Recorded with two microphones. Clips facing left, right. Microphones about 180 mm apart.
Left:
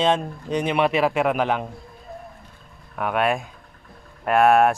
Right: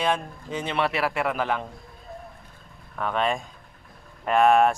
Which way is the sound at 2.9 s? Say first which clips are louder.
Left 3 dB; 10° left (ahead or behind).